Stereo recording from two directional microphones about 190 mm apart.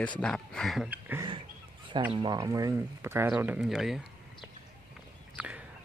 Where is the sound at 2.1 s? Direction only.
20° right (ahead or behind); by 4.0 s centre (ahead or behind).